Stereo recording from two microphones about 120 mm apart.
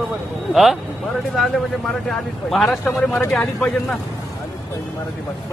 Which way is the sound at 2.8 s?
15° left (ahead or behind).